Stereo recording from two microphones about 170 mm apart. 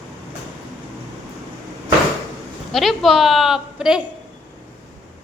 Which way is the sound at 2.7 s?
Centre (ahead or behind).